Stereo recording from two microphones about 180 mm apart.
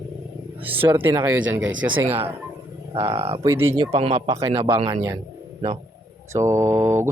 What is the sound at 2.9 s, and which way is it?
Speech, 35° right (ahead or behind).